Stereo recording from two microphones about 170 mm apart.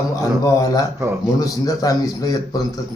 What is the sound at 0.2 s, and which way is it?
A man's voice, 20° left (ahead or behind).